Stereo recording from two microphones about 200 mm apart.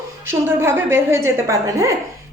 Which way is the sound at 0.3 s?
10° right (ahead or behind).